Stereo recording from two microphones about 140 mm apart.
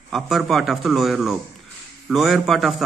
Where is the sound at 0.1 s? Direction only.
Centre (ahead or behind).